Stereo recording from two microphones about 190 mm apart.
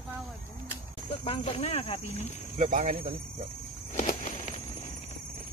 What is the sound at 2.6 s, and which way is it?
Speech, 40° right (ahead or behind).